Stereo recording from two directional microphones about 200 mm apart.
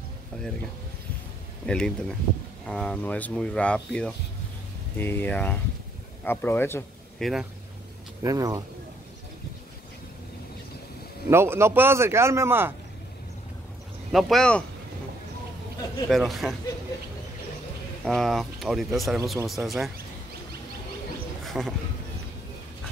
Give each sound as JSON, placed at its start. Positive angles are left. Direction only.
{"t": 1.7, "sound": "speech", "side_deg": 5}
{"t": 7.2, "sound": "speech", "side_deg": 0}
{"t": 8.2, "sound": "a man's voice", "side_deg": -15}
{"t": 11.2, "sound": "a man's voice", "side_deg": -10}
{"t": 14.1, "sound": "speech", "side_deg": 0}
{"t": 16.1, "sound": "speech", "side_deg": 0}
{"t": 18.0, "sound": "speech", "side_deg": 0}
{"t": 21.5, "sound": "a sound", "side_deg": 0}